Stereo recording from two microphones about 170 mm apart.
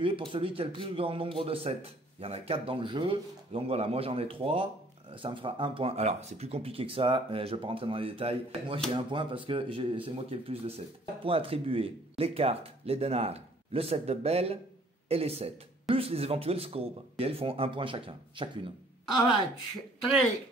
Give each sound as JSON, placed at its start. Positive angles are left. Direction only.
{"t": 0.3, "sound": "a man's voice", "side_deg": -30}